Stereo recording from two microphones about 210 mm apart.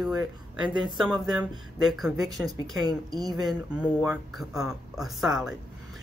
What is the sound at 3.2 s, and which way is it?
Speech, 20° right (ahead or behind).